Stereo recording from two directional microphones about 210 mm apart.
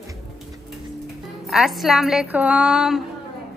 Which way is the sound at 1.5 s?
Centre (ahead or behind).